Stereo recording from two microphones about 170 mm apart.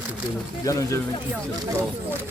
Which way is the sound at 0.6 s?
20° left (ahead or behind).